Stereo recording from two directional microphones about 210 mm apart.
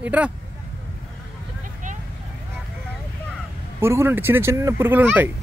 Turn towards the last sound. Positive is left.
turn(degrees=-10)  # may be behind; listen again after turning